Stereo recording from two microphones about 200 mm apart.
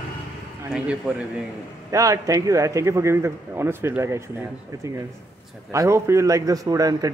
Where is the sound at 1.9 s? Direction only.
15° right (ahead or behind).